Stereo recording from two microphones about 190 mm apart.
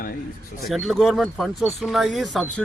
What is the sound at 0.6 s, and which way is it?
Speech, centre (ahead or behind).